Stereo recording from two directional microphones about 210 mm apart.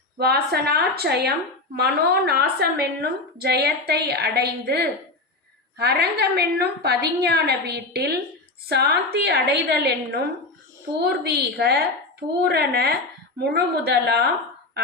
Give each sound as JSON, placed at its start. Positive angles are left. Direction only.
{"t": 0.2, "sound": "a woman's voice", "side_deg": -50}
{"t": 11.2, "sound": "a woman's voice", "side_deg": -50}